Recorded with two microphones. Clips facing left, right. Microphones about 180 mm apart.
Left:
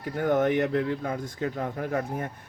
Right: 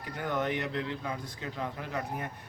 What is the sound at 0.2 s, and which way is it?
A man's voice, 50° left (ahead or behind).